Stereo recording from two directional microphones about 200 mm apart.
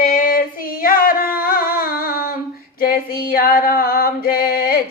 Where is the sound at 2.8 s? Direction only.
45° left (ahead or behind).